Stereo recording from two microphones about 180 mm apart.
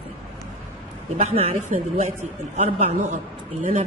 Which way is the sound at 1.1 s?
35° right (ahead or behind).